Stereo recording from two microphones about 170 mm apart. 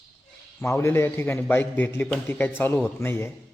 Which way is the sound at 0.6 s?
15° left (ahead or behind).